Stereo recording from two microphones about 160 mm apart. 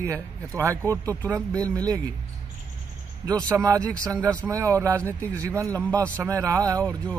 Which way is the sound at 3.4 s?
20° right (ahead or behind).